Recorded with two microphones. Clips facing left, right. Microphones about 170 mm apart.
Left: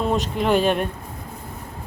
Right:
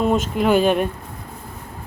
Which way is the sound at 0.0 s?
Centre (ahead or behind).